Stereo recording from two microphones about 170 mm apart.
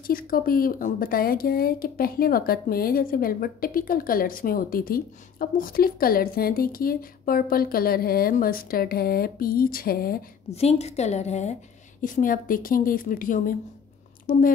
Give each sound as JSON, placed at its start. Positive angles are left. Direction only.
{"t": 0.0, "sound": "speech", "side_deg": 55}
{"t": 10.5, "sound": "a woman's voice", "side_deg": 35}
{"t": 12.0, "sound": "speech", "side_deg": 55}